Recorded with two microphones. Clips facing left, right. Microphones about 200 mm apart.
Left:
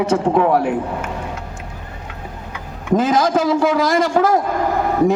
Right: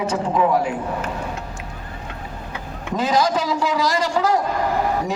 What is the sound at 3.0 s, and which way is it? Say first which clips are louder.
A man's voice: left 3 dB; 50° left (ahead or behind).